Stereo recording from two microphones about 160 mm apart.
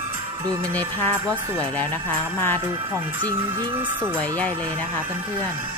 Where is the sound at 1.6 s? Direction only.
10° left (ahead or behind).